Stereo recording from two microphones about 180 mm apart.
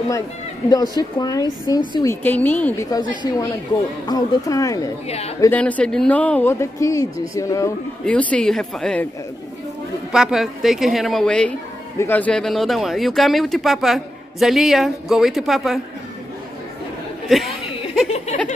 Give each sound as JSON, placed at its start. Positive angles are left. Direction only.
{"t": 0.7, "sound": "speech", "side_deg": 20}
{"t": 2.9, "sound": "speech", "side_deg": 20}
{"t": 5.0, "sound": "speech", "side_deg": 35}
{"t": 5.4, "sound": "speech", "side_deg": 10}
{"t": 8.0, "sound": "speech", "side_deg": 5}
{"t": 10.1, "sound": "speech", "side_deg": 0}
{"t": 17.3, "sound": "speech", "side_deg": 0}
{"t": 18.1, "sound": "a sound", "side_deg": 40}